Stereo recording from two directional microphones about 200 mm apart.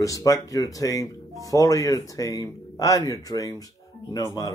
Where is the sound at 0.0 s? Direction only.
15° left (ahead or behind).